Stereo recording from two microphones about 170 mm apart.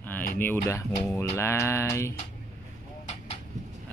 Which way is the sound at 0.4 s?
15° left (ahead or behind).